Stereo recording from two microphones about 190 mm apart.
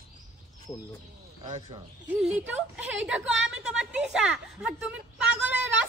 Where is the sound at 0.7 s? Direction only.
20° left (ahead or behind).